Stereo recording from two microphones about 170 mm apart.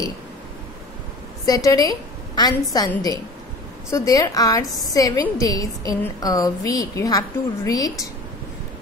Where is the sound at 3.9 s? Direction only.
20° left (ahead or behind).